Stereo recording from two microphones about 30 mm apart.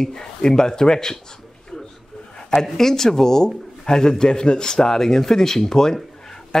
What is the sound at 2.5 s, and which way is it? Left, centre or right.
A man's voice, centre.